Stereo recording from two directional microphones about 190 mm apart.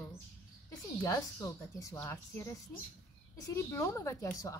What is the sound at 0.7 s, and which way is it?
A woman's voice, 15° left (ahead or behind).